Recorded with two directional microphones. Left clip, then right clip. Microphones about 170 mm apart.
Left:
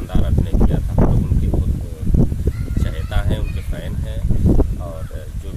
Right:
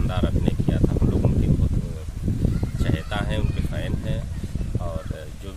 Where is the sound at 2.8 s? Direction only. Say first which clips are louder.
Right 2 dB; centre (ahead or behind).